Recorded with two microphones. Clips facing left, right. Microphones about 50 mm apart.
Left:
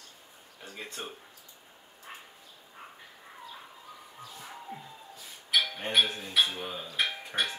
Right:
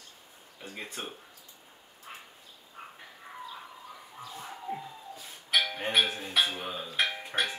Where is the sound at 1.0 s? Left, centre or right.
Right.